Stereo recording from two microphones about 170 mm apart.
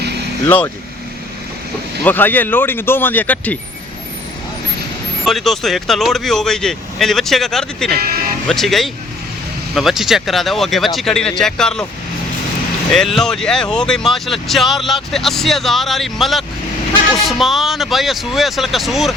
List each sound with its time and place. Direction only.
2.0 s speech: 10° left (ahead or behind)
5.2 s speech: centre (ahead or behind)
7.9 s speech: 65° right (ahead or behind)
8.4 s speech: centre (ahead or behind)
12.9 s speech: 5° left (ahead or behind)